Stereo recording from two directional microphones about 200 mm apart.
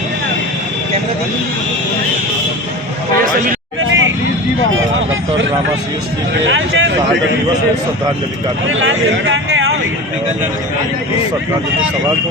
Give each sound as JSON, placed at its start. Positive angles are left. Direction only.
{"t": 3.8, "sound": "vehicle", "side_deg": -75}
{"t": 6.4, "sound": "speech", "side_deg": -70}
{"t": 8.7, "sound": "a man's voice", "side_deg": -75}